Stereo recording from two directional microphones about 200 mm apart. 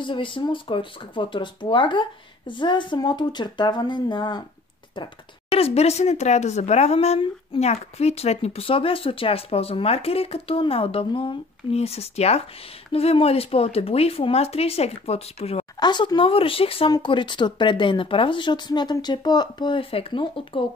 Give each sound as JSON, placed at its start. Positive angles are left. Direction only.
{"t": 0.0, "sound": "speech", "side_deg": 25}